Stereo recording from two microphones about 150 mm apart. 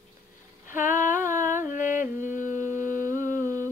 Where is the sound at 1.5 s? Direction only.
60° left (ahead or behind).